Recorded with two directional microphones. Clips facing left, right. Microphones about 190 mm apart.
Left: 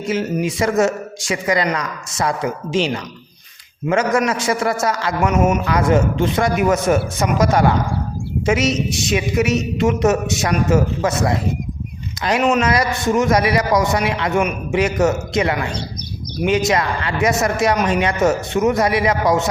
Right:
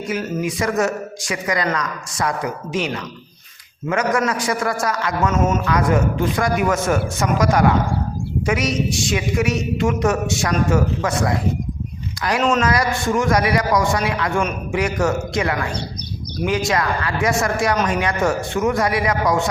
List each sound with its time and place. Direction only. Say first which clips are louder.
0.0 s a woman's voice: left 3 dB; 25° left (ahead or behind)
5.3 s speech: left 4 dB; 10° left (ahead or behind)
5.6 s a woman's voice: left 2 dB; 25° left (ahead or behind)